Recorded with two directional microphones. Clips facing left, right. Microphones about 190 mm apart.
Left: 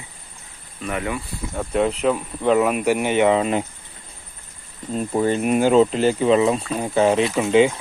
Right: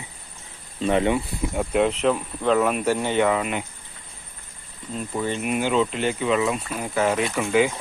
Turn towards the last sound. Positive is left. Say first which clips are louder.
# left 5 dB
turn(degrees=25)  # may be behind; listen again after turning